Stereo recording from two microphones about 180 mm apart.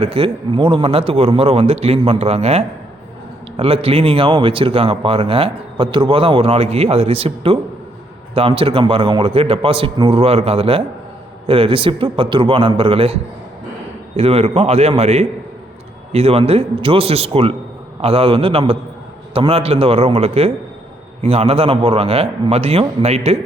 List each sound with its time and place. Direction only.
0.0 s a man's voice: 30° right (ahead or behind)
14.2 s speech: 35° right (ahead or behind)